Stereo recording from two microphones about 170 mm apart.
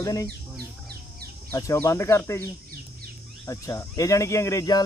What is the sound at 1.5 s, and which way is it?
Speech, 20° left (ahead or behind).